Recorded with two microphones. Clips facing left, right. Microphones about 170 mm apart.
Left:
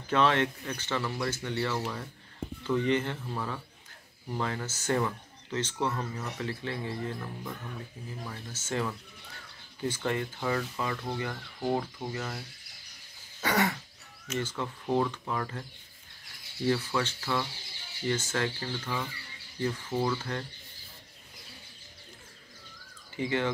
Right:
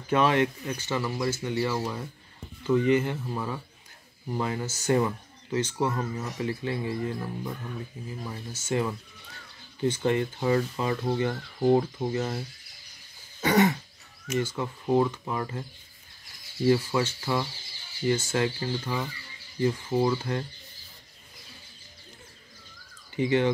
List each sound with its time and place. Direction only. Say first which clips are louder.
0.1 s speech: right 3 dB; 10° right (ahead or behind)
13.4 s throat clearing: right 6 dB; 20° right (ahead or behind)
14.2 s speech: right 5 dB; 10° right (ahead or behind)
16.6 s speech: right 5 dB; 10° right (ahead or behind)
23.1 s speech: right 6 dB; 20° right (ahead or behind)